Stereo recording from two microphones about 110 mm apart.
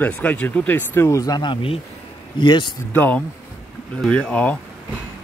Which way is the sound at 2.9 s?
15° left (ahead or behind).